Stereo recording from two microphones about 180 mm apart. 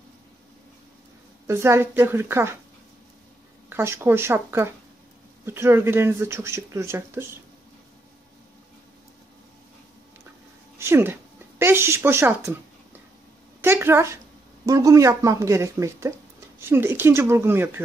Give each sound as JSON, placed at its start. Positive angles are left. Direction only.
{"t": 1.5, "sound": "speech", "side_deg": -15}
{"t": 3.6, "sound": "speech", "side_deg": -15}
{"t": 10.8, "sound": "a woman's voice", "side_deg": -15}